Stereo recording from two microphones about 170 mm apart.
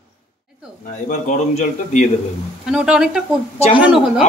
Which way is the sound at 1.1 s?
45° left (ahead or behind).